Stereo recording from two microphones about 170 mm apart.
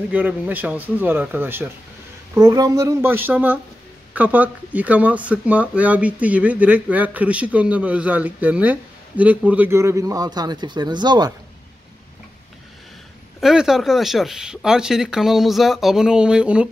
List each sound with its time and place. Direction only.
0.1 s speech: 10° right (ahead or behind)
2.3 s speech: 25° right (ahead or behind)
13.4 s speech: 5° right (ahead or behind)